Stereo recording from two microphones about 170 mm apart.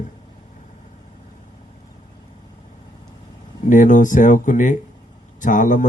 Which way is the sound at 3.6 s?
50° left (ahead or behind).